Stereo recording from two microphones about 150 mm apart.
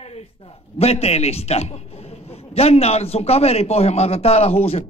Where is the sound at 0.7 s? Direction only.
45° left (ahead or behind).